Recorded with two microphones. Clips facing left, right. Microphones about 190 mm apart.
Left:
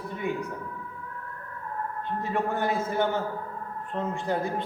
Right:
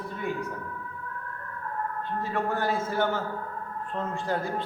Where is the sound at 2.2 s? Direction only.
20° left (ahead or behind).